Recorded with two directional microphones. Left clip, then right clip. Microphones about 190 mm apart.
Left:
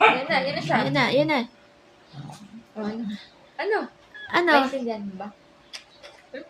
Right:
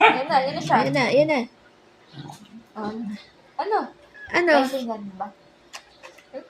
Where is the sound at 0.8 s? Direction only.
Centre (ahead or behind).